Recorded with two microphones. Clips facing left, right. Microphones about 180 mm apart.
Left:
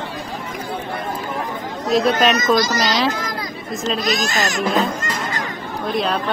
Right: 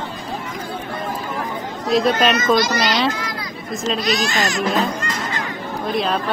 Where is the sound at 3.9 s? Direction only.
45° left (ahead or behind).